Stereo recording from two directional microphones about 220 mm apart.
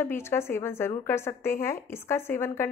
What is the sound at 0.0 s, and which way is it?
A woman's voice, 10° left (ahead or behind).